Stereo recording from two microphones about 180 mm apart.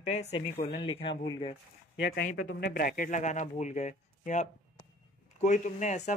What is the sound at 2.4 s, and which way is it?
Speech, 65° left (ahead or behind).